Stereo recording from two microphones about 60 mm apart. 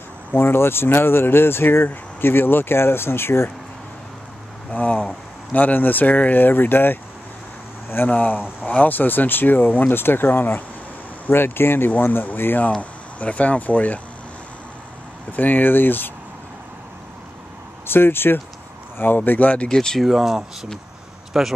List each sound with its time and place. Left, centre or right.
0.3 s speech: left
4.7 s speech: left
8.1 s speech: left
13.2 s speech: left
15.3 s speech: left
17.8 s speech: left
19.7 s speech: centre
20.1 s speech: centre